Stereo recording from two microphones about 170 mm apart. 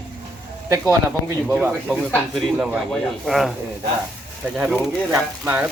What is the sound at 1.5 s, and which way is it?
Speech, 10° right (ahead or behind).